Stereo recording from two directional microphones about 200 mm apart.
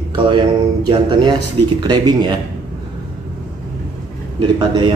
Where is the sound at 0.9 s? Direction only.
25° right (ahead or behind).